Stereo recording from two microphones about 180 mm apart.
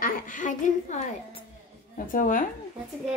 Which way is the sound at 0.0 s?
50° left (ahead or behind).